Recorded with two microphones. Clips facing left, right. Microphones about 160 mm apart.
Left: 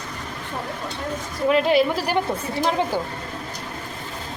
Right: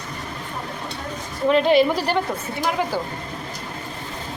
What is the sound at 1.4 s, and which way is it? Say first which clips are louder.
Speech: right 2 dB; 5° left (ahead or behind).